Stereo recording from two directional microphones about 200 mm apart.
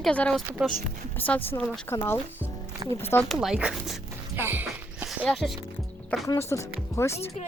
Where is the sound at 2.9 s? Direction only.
10° left (ahead or behind).